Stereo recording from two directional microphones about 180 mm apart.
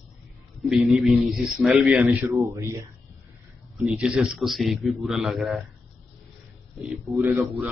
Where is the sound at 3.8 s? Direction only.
5° right (ahead or behind).